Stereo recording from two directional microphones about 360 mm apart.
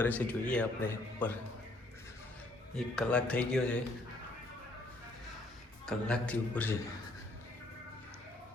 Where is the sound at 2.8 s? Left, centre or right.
Centre.